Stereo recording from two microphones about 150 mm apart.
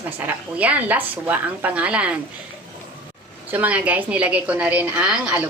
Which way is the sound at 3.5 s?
10° right (ahead or behind).